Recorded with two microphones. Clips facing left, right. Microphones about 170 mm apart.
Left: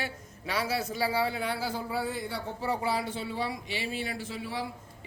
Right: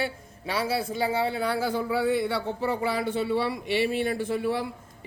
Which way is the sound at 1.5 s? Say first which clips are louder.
Right 6 dB; 60° right (ahead or behind).